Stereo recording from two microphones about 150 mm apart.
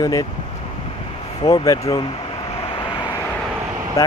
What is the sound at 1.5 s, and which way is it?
Speech, 25° left (ahead or behind).